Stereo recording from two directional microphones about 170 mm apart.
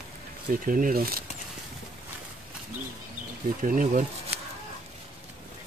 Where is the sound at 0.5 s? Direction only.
50° right (ahead or behind).